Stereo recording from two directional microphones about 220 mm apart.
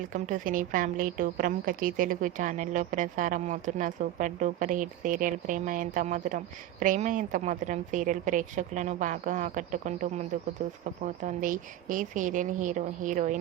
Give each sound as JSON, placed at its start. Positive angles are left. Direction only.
{"t": 0.1, "sound": "a woman's voice", "side_deg": -35}